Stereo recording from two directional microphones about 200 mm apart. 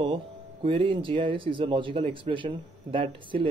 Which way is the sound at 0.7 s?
25° right (ahead or behind).